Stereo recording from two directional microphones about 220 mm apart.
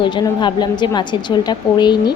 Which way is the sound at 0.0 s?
20° left (ahead or behind).